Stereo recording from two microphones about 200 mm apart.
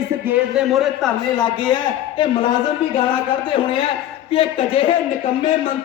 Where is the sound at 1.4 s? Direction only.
20° left (ahead or behind).